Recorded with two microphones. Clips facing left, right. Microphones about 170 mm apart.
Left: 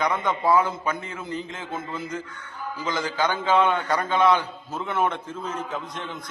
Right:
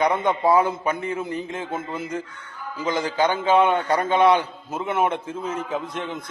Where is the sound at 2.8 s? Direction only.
30° right (ahead or behind).